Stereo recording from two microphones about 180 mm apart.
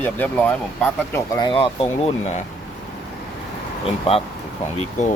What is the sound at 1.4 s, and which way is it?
Speech, 30° left (ahead or behind).